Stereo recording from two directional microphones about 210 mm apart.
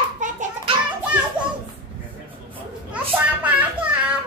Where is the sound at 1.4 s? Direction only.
5° right (ahead or behind).